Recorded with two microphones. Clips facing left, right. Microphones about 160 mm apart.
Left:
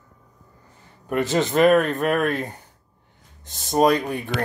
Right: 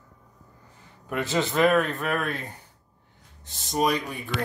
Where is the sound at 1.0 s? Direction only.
50° left (ahead or behind).